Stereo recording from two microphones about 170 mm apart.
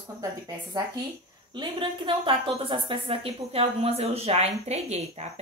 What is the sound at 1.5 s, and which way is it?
A woman's voice, 30° right (ahead or behind).